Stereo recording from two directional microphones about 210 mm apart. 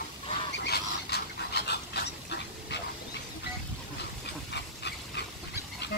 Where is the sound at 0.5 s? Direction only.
50° left (ahead or behind).